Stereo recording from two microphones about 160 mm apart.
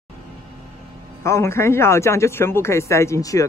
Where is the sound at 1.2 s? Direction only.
15° left (ahead or behind).